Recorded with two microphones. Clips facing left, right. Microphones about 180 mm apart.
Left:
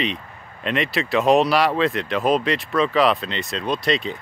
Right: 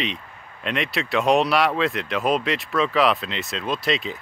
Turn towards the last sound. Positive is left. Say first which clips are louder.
# left 2 dB
turn(degrees=0)  # may be behind; listen again after turning